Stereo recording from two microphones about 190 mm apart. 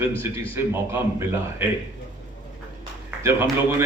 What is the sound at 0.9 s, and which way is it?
Speech, 15° right (ahead or behind).